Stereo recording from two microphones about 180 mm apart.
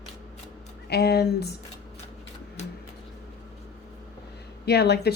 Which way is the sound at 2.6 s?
40° left (ahead or behind).